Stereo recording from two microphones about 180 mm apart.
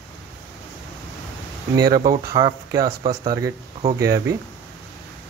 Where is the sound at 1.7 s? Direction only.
20° right (ahead or behind).